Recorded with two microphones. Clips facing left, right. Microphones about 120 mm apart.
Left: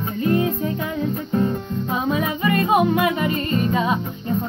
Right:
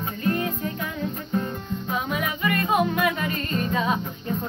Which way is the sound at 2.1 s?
25° left (ahead or behind).